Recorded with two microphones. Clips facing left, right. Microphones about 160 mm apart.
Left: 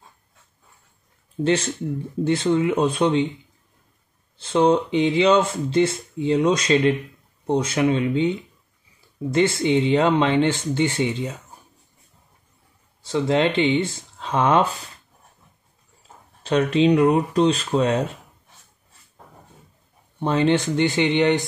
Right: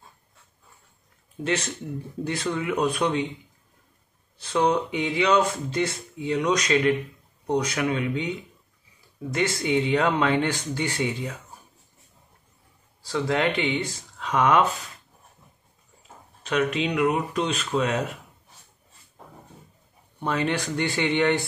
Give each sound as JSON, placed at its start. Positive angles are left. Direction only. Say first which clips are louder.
{"t": 1.4, "sound": "speech", "louder": "left 6 dB", "side_deg": 30}
{"t": 4.4, "sound": "speech", "louder": "left 5 dB", "side_deg": 25}
{"t": 9.3, "sound": "speech", "louder": "left 5 dB", "side_deg": 25}
{"t": 13.0, "sound": "speech", "louder": "left 4 dB", "side_deg": 25}
{"t": 16.4, "sound": "speech", "louder": "left 7 dB", "side_deg": 30}
{"t": 20.2, "sound": "speech", "louder": "left 6 dB", "side_deg": 30}